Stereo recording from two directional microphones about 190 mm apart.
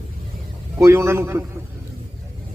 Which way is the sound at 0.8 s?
15° right (ahead or behind).